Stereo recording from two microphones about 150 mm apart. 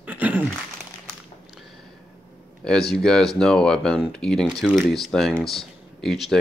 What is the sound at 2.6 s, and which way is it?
Speech, 5° left (ahead or behind).